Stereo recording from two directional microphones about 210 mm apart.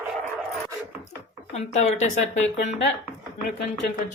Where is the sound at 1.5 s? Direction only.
30° left (ahead or behind).